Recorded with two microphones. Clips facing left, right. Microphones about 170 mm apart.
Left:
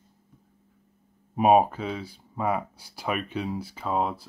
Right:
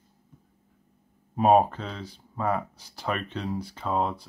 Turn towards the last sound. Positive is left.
turn(degrees=5)  # may be behind; listen again after turning